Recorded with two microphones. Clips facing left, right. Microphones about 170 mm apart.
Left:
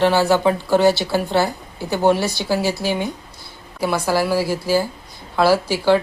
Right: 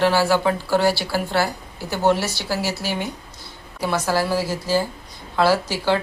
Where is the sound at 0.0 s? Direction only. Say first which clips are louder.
Left 2 dB; 20° left (ahead or behind).